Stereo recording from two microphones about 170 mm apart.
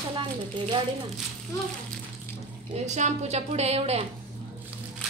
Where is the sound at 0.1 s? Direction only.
30° right (ahead or behind).